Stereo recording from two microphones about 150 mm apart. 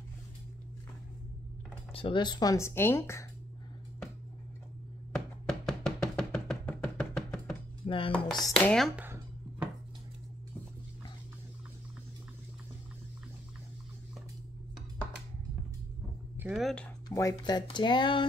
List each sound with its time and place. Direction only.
2.0 s speech: 35° left (ahead or behind); by 3.3 s 15° left (ahead or behind)
5.1 s music: 5° left (ahead or behind)
7.8 s dishes: 35° left (ahead or behind)
8.5 s speech: 5° left (ahead or behind)
8.9 s a sound: 10° right (ahead or behind)
16.3 s a sound: 5° right (ahead or behind)
17.1 s speech: 20° left (ahead or behind)